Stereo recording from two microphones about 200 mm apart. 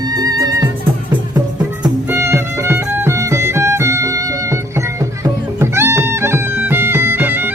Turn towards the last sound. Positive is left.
turn(degrees=-10)  # may be behind; listen again after turning